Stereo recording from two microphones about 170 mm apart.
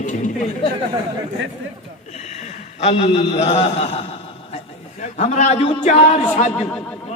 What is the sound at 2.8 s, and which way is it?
A man's voice, 40° left (ahead or behind).